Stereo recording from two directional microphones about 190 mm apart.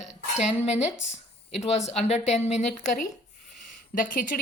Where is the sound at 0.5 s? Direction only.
35° left (ahead or behind).